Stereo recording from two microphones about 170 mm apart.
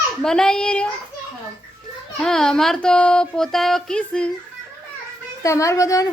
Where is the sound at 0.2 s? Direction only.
5° left (ahead or behind).